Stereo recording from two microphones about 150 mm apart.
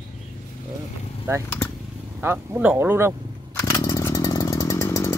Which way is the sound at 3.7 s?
25° left (ahead or behind).